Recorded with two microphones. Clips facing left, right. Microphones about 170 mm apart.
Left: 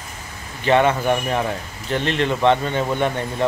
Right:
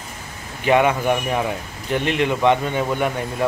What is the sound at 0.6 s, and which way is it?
Speech, 10° right (ahead or behind).